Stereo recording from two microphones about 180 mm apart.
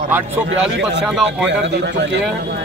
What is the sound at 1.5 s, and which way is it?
Speech, 75° right (ahead or behind).